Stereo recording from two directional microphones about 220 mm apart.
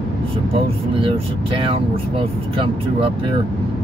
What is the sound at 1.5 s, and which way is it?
Speech, 25° right (ahead or behind).